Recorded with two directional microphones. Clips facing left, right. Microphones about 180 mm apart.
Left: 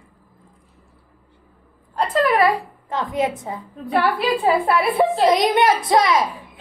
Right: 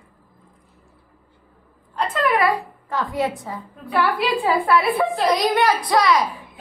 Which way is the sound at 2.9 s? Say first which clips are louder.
Left 1 dB; 20° left (ahead or behind).